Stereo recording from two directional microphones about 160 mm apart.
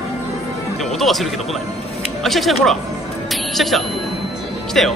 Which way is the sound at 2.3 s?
Centre (ahead or behind).